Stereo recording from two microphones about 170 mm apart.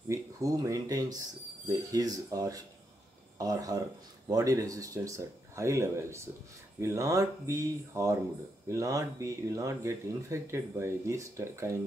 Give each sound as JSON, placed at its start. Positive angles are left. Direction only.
{"t": 0.1, "sound": "speech", "side_deg": -20}